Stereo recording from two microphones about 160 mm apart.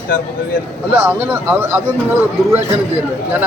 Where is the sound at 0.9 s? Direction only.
10° right (ahead or behind).